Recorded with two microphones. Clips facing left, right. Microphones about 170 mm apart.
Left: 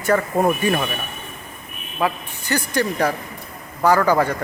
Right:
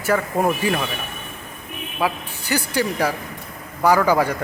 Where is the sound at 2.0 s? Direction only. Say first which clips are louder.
Left 1 dB; 5° right (ahead or behind).